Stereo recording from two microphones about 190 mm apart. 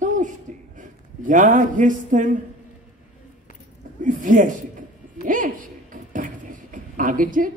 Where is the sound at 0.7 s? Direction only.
45° right (ahead or behind).